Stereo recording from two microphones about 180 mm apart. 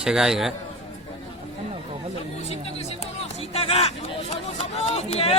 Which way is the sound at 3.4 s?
35° left (ahead or behind).